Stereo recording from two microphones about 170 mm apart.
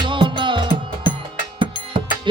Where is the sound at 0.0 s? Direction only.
30° right (ahead or behind).